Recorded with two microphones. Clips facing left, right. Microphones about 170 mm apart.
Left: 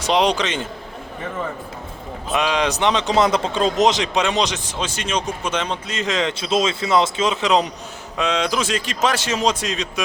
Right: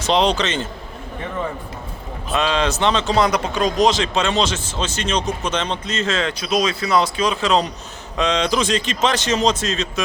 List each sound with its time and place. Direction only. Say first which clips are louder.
0.0 s speech: right 1 dB; 10° left (ahead or behind)
2.3 s speech: even; 15° left (ahead or behind)
8.1 s speech: right 2 dB; 5° left (ahead or behind)